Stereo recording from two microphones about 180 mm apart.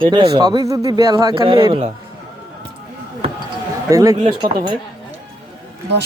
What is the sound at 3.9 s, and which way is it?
Speech, 20° right (ahead or behind).